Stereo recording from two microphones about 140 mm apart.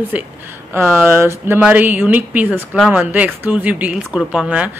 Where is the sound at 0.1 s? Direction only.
10° right (ahead or behind).